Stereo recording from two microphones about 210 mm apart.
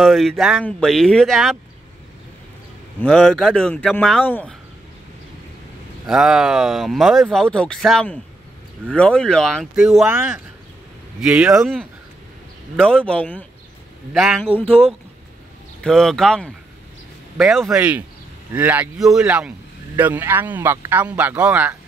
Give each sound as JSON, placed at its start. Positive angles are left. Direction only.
{"t": 0.0, "sound": "speech", "side_deg": 0}
{"t": 3.0, "sound": "speech", "side_deg": 5}
{"t": 6.0, "sound": "speech", "side_deg": 0}
{"t": 14.5, "sound": "speech", "side_deg": -30}
{"t": 15.8, "sound": "speech", "side_deg": 0}